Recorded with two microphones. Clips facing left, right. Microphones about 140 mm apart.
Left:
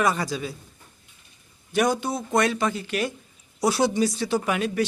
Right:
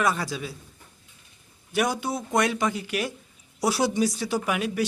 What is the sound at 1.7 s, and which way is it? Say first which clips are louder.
A man's voice: left 3 dB; 5° right (ahead or behind).